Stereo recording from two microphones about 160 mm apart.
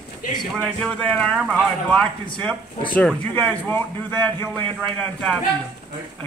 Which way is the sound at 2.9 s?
10° left (ahead or behind).